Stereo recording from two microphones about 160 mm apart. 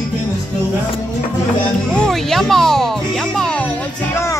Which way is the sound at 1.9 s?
5° left (ahead or behind).